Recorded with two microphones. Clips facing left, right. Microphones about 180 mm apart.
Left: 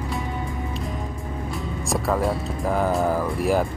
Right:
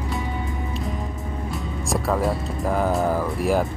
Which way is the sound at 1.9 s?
Centre (ahead or behind).